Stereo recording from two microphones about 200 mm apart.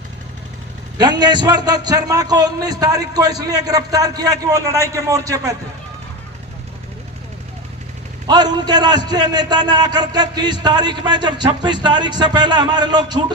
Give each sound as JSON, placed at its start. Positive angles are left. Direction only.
{"t": 1.2, "sound": "a man's voice", "side_deg": -20}
{"t": 8.3, "sound": "a man's voice", "side_deg": -20}